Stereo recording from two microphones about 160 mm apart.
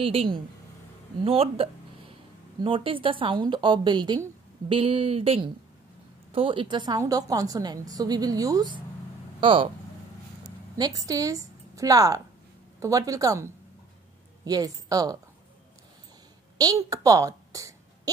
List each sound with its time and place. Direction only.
0.0 s a woman's voice: 35° right (ahead or behind)
10.8 s a woman's voice: 20° right (ahead or behind)
16.5 s a sound: 20° right (ahead or behind)